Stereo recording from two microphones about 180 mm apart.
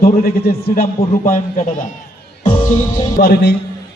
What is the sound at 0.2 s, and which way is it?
Speech, 60° left (ahead or behind).